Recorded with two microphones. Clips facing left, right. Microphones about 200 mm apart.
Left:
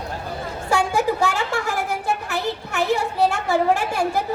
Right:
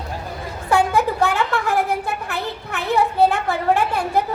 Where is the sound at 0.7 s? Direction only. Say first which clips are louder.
Right 2 dB; 60° right (ahead or behind).